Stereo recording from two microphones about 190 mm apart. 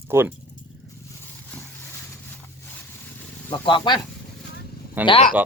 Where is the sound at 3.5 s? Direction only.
25° left (ahead or behind).